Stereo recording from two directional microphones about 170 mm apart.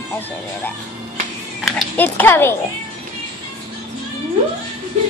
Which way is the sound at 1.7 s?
Centre (ahead or behind).